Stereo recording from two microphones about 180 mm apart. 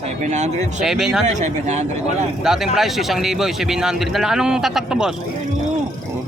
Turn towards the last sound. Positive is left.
turn(degrees=-5)  # may be behind; listen again after turning